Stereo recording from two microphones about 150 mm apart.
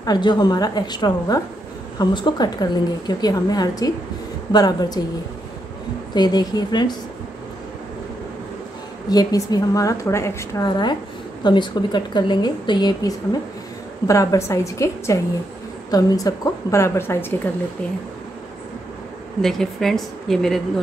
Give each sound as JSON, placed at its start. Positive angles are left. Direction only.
{"t": 0.0, "sound": "a woman's voice", "side_deg": 25}
{"t": 6.1, "sound": "a woman's voice", "side_deg": 25}
{"t": 9.1, "sound": "a woman's voice", "side_deg": 25}
{"t": 19.4, "sound": "a woman's voice", "side_deg": 5}